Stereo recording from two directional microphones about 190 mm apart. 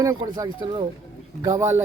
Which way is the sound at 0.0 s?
20° right (ahead or behind).